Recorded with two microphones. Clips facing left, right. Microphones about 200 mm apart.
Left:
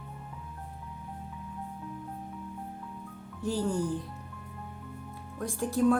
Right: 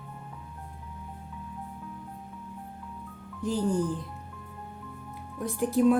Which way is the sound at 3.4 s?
20° right (ahead or behind).